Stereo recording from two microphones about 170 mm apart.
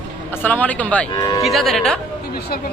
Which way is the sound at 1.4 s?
Centre (ahead or behind).